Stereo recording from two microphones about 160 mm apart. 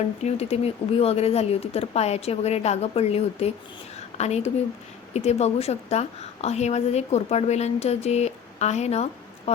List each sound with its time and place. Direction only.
0.2 s a woman's voice: 40° left (ahead or behind)